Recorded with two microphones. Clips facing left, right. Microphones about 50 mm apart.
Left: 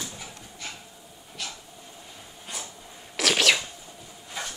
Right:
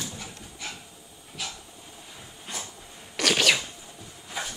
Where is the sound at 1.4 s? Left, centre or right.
Centre.